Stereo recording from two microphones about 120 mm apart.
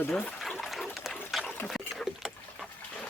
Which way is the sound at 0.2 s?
10° left (ahead or behind).